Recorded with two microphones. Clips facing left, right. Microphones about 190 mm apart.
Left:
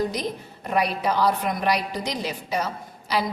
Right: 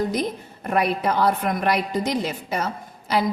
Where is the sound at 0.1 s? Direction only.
50° right (ahead or behind).